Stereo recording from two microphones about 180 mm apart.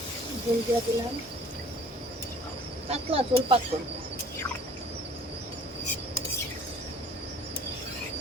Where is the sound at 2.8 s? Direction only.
35° right (ahead or behind).